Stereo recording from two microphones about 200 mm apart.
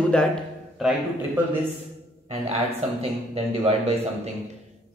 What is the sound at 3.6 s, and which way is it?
Speech, 30° right (ahead or behind).